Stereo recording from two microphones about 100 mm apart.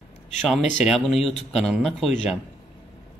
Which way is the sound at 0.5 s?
Centre (ahead or behind).